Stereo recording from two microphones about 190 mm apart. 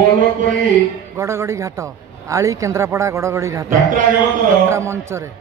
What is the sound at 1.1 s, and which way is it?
A man's voice, 15° right (ahead or behind).